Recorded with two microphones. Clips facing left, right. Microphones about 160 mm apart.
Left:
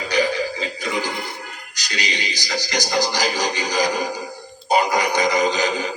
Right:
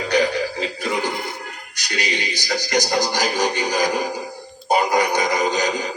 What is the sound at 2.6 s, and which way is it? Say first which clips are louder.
Speech: right 2 dB; 50° right (ahead or behind).